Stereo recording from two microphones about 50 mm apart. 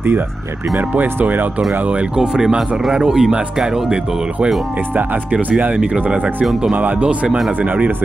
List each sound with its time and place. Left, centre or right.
0.7 s speech: right
2.1 s speech: centre
4.9 s speech: right
7.2 s speech: centre
7.5 s speech: right